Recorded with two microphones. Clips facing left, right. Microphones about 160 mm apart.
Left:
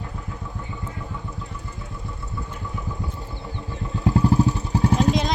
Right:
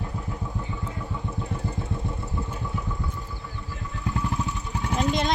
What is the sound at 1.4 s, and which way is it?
Vehicle, 35° right (ahead or behind).